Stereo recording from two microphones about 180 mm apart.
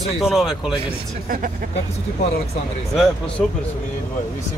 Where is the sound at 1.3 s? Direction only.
50° right (ahead or behind).